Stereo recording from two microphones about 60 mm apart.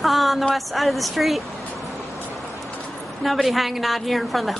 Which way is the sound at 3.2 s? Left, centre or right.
Centre.